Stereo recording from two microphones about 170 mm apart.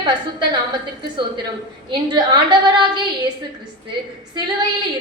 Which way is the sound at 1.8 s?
25° right (ahead or behind).